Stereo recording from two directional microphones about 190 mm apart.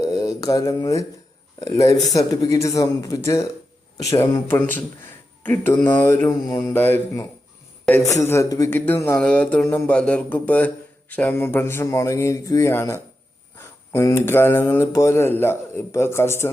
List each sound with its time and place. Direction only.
0.0 s mantra: 20° left (ahead or behind)
1.5 s speech: 20° left (ahead or behind)